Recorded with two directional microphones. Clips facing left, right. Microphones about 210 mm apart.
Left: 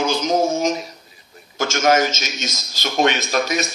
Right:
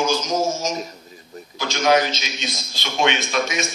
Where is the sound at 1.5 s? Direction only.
50° left (ahead or behind).